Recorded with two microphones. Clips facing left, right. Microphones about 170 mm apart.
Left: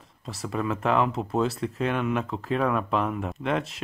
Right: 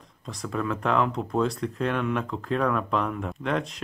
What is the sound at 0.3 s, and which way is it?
Speech, 5° left (ahead or behind).